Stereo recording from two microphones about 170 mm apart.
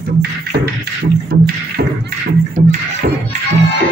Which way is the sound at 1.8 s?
60° right (ahead or behind).